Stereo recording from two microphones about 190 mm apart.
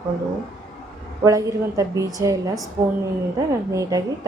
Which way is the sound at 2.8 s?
40° right (ahead or behind).